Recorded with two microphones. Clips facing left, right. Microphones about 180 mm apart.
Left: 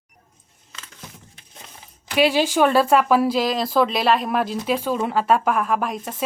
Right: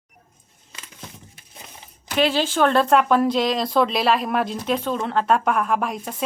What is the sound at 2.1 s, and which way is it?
A woman's voice, 10° left (ahead or behind).